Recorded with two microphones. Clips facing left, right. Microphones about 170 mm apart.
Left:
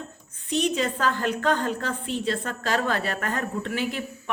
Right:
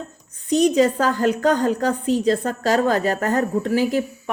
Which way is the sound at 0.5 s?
40° right (ahead or behind).